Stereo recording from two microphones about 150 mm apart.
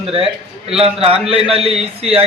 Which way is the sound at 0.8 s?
40° right (ahead or behind).